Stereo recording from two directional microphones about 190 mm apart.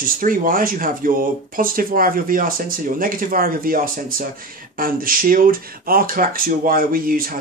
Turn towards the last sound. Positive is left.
turn(degrees=-50)  # may be behind; listen again after turning